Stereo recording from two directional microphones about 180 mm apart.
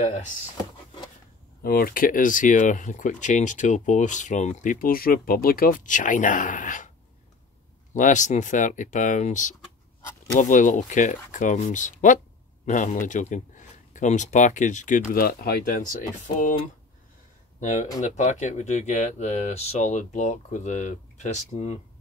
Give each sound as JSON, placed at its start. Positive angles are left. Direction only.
{"t": 0.0, "sound": "speech", "side_deg": 45}
{"t": 1.6, "sound": "speech", "side_deg": 55}
{"t": 7.9, "sound": "speech", "side_deg": 45}
{"t": 17.6, "sound": "speech", "side_deg": 40}